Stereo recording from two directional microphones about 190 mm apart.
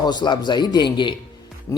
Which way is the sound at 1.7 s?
15° left (ahead or behind).